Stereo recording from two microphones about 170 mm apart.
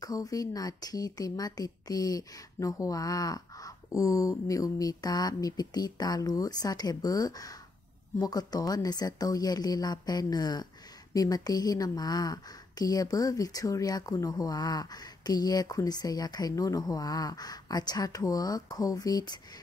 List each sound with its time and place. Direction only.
0.0 s a woman's voice: 20° left (ahead or behind)